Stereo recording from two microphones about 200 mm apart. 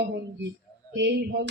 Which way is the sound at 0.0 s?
60° right (ahead or behind).